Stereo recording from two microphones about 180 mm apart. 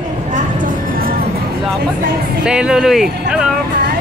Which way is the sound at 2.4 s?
5° right (ahead or behind).